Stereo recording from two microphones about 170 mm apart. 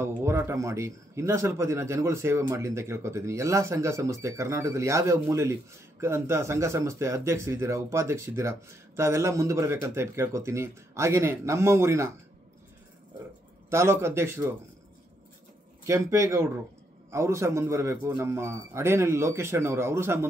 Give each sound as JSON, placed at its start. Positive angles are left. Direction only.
{"t": 0.0, "sound": "speech", "side_deg": -15}
{"t": 13.7, "sound": "speech", "side_deg": -15}
{"t": 15.8, "sound": "speech", "side_deg": -15}